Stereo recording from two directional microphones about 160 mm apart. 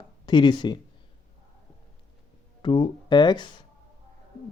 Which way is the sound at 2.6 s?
30° left (ahead or behind).